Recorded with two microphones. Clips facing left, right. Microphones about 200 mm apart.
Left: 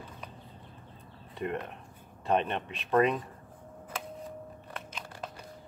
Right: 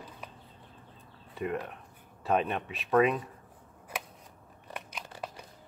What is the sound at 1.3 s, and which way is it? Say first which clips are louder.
Speech: right 1 dB; 5° right (ahead or behind).